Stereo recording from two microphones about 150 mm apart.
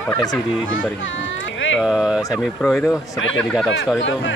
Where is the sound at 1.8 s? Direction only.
5° right (ahead or behind).